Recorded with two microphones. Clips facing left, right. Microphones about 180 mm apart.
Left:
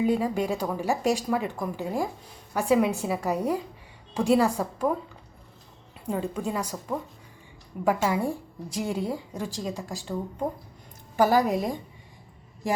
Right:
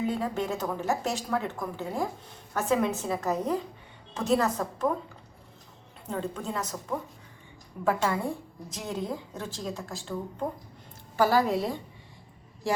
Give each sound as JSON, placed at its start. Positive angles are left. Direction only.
{"t": 0.0, "sound": "speech", "side_deg": 15}
{"t": 6.1, "sound": "speech", "side_deg": 10}
{"t": 11.2, "sound": "speech", "side_deg": 15}